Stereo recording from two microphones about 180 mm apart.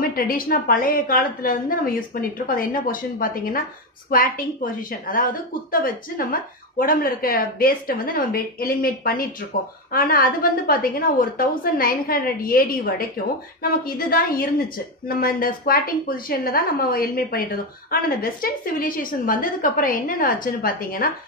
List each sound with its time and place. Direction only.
0.1 s a woman's voice: 55° left (ahead or behind)
5.0 s a woman's voice: 50° left (ahead or behind)